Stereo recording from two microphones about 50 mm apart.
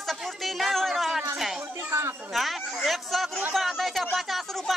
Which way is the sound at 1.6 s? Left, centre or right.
Right.